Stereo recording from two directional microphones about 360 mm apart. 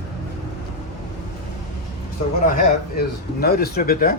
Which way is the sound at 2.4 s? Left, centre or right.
Left.